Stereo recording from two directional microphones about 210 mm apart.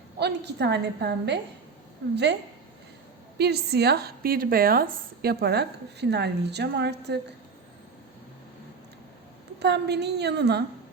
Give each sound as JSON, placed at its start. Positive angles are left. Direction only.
{"t": 0.2, "sound": "speech", "side_deg": -50}
{"t": 3.3, "sound": "speech", "side_deg": -50}
{"t": 9.6, "sound": "speech", "side_deg": -55}